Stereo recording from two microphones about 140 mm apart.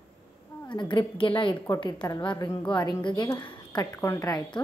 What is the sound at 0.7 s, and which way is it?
A woman's voice, 35° left (ahead or behind).